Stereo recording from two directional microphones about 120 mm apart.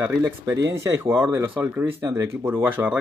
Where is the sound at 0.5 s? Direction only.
25° right (ahead or behind).